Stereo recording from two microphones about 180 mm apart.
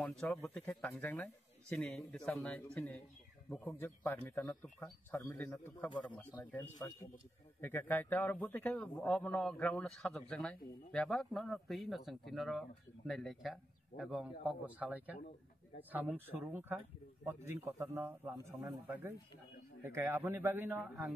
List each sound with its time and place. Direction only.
0.0 s a man's voice: 5° left (ahead or behind); by 21.1 s 10° right (ahead or behind)